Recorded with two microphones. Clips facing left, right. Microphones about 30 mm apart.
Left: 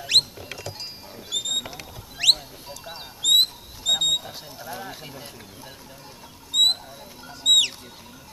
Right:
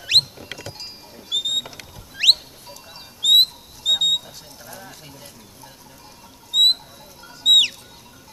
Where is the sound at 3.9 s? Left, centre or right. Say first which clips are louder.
Right 3 dB; centre.